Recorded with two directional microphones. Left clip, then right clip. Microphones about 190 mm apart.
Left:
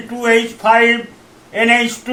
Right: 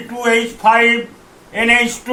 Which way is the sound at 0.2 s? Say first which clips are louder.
Left 1 dB; 10° left (ahead or behind).